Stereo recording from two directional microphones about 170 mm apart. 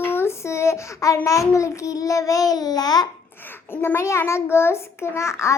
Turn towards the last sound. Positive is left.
turn(degrees=15)  # may be behind; listen again after turning